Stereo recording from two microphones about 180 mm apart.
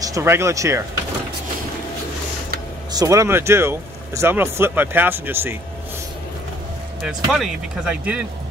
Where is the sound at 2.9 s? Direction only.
20° right (ahead or behind).